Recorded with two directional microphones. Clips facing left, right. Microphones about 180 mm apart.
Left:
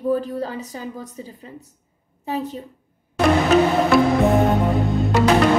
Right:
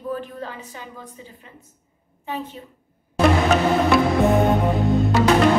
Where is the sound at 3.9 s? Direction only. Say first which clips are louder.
Left 2 dB; centre (ahead or behind).